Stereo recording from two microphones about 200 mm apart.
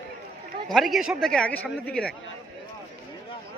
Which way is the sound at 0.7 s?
Centre (ahead or behind).